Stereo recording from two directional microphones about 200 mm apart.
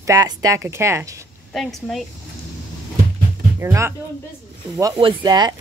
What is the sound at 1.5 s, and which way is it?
Speech, centre (ahead or behind).